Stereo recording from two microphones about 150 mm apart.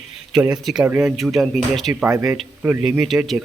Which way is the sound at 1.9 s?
15° right (ahead or behind).